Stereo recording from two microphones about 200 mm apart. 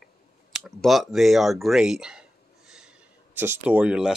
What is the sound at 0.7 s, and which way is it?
Speech, centre (ahead or behind).